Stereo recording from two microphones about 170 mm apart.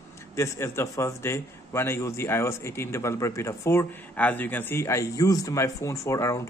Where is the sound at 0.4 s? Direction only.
15° left (ahead or behind).